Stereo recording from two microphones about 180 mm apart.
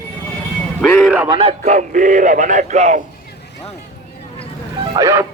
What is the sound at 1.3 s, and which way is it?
Speech, 30° right (ahead or behind).